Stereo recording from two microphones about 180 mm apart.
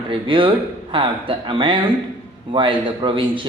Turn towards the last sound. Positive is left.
turn(degrees=-25)  # may be behind; listen again after turning